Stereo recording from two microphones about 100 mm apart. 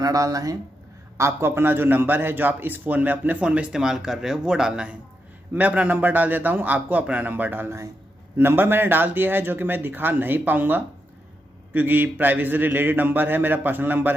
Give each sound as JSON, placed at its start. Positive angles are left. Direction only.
{"t": 0.0, "sound": "a man's voice", "side_deg": -35}